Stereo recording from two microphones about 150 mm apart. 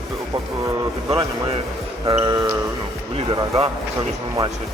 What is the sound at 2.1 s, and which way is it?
Speech, 40° right (ahead or behind).